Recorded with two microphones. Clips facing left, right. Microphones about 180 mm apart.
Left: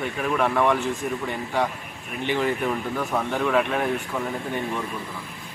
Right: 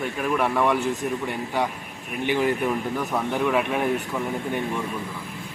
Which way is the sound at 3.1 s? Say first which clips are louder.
Left 1 dB; 5° right (ahead or behind).